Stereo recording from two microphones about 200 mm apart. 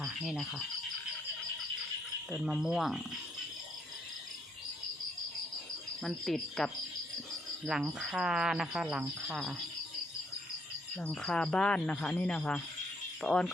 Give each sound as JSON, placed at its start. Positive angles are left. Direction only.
{"t": 0.0, "sound": "insect", "side_deg": 0}
{"t": 2.4, "sound": "speech", "side_deg": 0}
{"t": 6.0, "sound": "speech", "side_deg": 0}
{"t": 7.7, "sound": "speech", "side_deg": 0}
{"t": 11.0, "sound": "speech", "side_deg": 5}